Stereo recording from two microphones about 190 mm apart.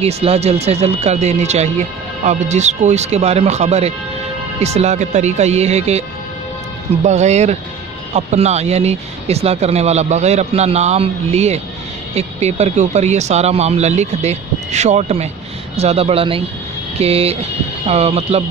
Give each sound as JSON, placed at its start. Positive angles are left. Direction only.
{"t": 0.0, "sound": "speech", "side_deg": -30}
{"t": 7.1, "sound": "speech", "side_deg": -35}